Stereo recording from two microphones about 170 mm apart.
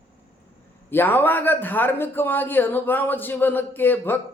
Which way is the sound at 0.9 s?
10° left (ahead or behind).